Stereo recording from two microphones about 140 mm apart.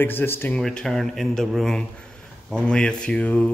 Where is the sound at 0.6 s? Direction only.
5° left (ahead or behind).